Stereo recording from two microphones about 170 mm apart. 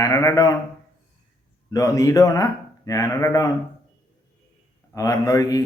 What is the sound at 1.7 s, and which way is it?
A man's voice, 20° left (ahead or behind).